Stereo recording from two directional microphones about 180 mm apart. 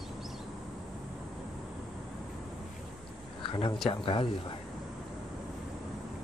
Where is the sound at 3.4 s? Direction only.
30° left (ahead or behind).